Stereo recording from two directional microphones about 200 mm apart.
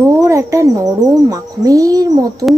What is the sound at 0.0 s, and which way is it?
Speech, 15° right (ahead or behind).